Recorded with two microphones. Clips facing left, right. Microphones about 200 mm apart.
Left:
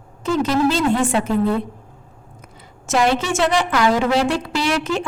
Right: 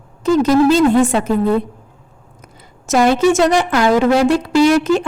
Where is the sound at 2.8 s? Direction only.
40° right (ahead or behind).